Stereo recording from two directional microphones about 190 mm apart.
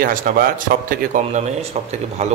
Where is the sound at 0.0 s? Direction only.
45° right (ahead or behind).